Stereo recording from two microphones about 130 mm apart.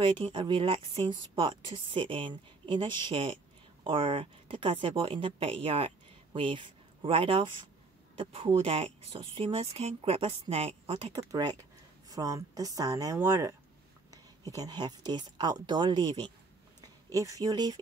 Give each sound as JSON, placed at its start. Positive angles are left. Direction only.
{"t": 0.0, "sound": "a woman's voice", "side_deg": -40}
{"t": 12.1, "sound": "a woman's voice", "side_deg": -25}
{"t": 16.8, "sound": "speech", "side_deg": -25}